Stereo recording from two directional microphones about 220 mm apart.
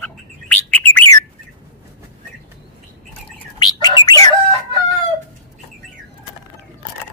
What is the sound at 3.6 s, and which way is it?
Bird, 20° left (ahead or behind).